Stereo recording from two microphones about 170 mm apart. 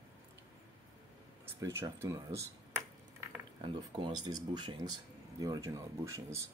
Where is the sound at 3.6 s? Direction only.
30° right (ahead or behind).